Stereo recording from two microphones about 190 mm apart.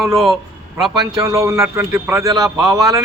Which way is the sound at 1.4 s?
15° right (ahead or behind).